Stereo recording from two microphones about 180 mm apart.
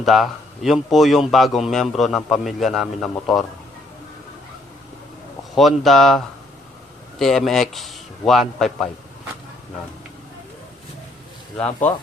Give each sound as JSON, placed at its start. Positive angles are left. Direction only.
{"t": 0.0, "sound": "a man's voice", "side_deg": 0}
{"t": 5.5, "sound": "a man's voice", "side_deg": 0}
{"t": 11.5, "sound": "speech", "side_deg": 10}